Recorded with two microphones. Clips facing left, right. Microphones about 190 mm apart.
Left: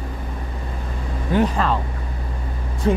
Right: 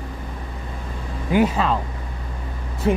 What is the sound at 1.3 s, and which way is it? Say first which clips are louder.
Speech: right 1 dB; 5° right (ahead or behind).